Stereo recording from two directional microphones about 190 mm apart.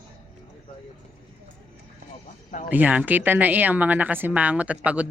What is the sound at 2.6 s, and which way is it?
Speech, 10° right (ahead or behind).